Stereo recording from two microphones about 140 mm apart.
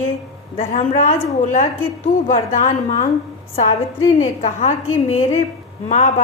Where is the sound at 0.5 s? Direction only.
55° left (ahead or behind).